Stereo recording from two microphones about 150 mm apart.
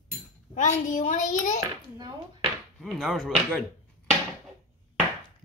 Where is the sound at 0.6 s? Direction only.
55° left (ahead or behind).